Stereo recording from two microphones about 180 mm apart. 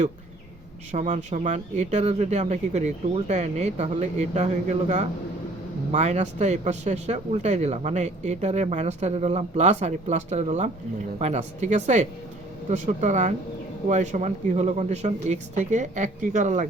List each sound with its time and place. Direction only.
0.9 s speech: 40° right (ahead or behind)